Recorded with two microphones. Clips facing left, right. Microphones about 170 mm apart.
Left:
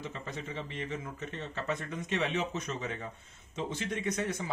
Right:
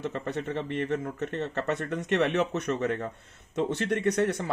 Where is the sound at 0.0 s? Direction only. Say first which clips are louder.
Right 9 dB; 65° right (ahead or behind).